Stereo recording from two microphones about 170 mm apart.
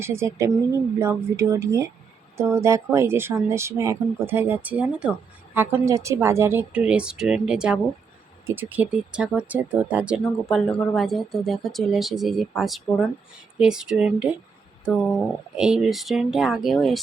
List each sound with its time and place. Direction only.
0.0 s speech: 15° right (ahead or behind); by 17.0 s centre (ahead or behind)